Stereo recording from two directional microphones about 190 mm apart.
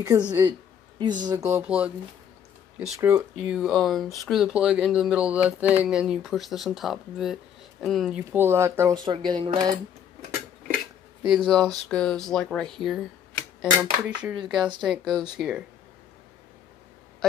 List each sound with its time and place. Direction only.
0.3 s a sound: 25° right (ahead or behind)
1.2 s music: 15° right (ahead or behind)
3.0 s music: 15° right (ahead or behind)
3.5 s speech: centre (ahead or behind)
8.3 s music: 15° right (ahead or behind)
9.0 s speech: 20° right (ahead or behind)
11.2 s speech: centre (ahead or behind)